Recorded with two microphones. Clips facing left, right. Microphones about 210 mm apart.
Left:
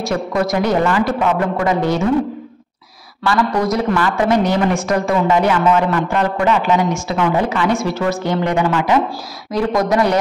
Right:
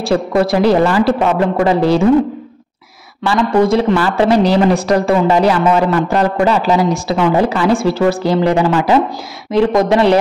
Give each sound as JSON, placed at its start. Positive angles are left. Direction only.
{"t": 0.0, "sound": "a man's voice", "side_deg": -30}
{"t": 3.3, "sound": "a man's voice", "side_deg": -25}